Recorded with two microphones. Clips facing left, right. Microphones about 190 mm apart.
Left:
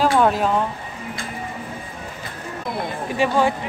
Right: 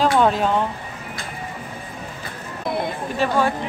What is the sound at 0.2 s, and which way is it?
Speech, 5° left (ahead or behind).